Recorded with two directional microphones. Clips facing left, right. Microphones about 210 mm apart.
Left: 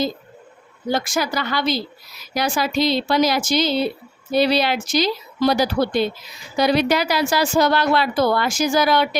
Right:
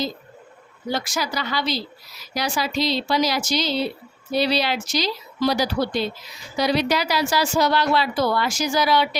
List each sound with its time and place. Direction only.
0.9 s a woman's voice: 50° left (ahead or behind)